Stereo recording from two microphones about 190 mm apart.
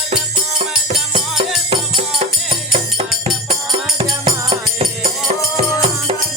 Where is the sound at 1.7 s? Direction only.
30° right (ahead or behind).